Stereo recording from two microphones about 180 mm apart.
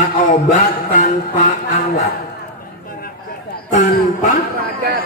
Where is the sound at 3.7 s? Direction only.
45° left (ahead or behind).